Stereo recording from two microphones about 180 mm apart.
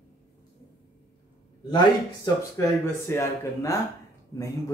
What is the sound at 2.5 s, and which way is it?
Speech, 15° left (ahead or behind).